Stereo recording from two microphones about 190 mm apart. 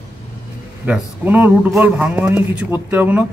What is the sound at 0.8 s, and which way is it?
A man's voice, 10° right (ahead or behind).